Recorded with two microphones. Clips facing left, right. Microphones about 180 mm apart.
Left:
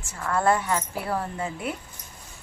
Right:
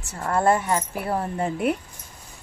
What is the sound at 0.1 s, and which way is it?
Speech, 30° right (ahead or behind).